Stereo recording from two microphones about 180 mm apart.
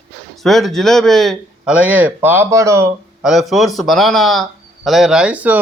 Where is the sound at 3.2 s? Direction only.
Centre (ahead or behind).